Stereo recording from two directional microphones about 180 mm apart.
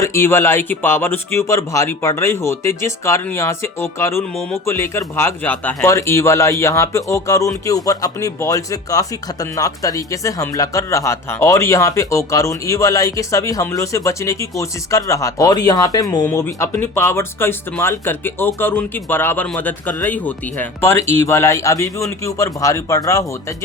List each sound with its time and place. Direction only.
0.0 s speech: 15° left (ahead or behind)